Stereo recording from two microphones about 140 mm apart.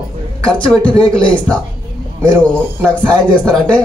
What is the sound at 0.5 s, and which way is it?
Speech, 5° left (ahead or behind).